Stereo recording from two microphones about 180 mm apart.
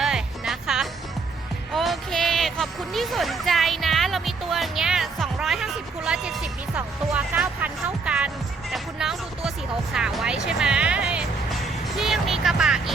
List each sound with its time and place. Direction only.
0.0 s music: centre (ahead or behind)
8.7 s speech: centre (ahead or behind)